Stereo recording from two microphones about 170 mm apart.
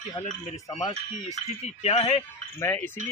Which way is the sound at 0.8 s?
40° left (ahead or behind).